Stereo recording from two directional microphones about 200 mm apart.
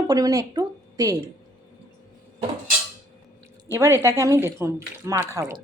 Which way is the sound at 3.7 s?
15° right (ahead or behind).